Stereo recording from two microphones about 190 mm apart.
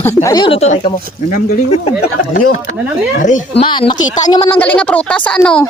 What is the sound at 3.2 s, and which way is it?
Speech, 40° left (ahead or behind).